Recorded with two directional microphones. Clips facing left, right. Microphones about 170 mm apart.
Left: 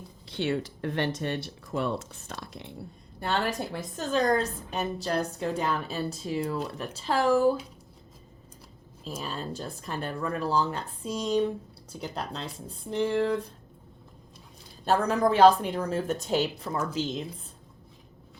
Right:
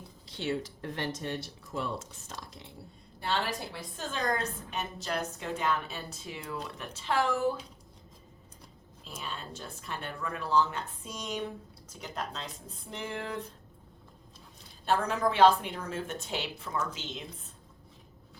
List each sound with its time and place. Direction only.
0.3 s speech: 65° left (ahead or behind)
3.2 s a woman's voice: 50° left (ahead or behind)
9.0 s a woman's voice: 40° left (ahead or behind)
14.8 s a woman's voice: 40° left (ahead or behind)